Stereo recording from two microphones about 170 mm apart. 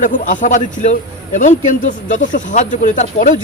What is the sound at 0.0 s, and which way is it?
Speech, 50° left (ahead or behind).